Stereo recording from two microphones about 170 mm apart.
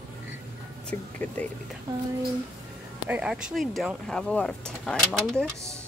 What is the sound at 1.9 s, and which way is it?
Speech, 20° right (ahead or behind).